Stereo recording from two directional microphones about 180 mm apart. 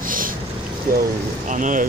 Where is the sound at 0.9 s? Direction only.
50° right (ahead or behind).